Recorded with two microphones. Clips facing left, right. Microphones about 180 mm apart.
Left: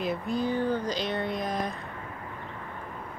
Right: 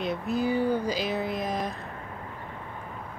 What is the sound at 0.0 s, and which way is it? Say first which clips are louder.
Speech: right 1 dB; centre (ahead or behind).